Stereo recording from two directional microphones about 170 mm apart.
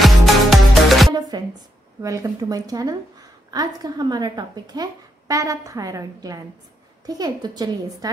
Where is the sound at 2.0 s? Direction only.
20° right (ahead or behind).